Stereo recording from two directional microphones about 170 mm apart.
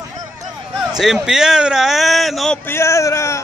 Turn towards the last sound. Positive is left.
turn(degrees=15)  # may be behind; listen again after turning